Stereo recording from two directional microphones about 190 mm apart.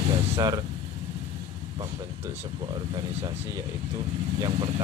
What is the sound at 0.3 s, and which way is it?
Speech, 20° right (ahead or behind).